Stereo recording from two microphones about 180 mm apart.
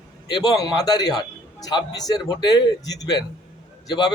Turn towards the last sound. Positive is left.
turn(degrees=25)  # may be behind; listen again after turning